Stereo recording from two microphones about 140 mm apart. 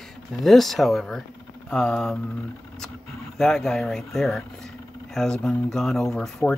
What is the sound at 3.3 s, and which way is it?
Speech, 5° left (ahead or behind).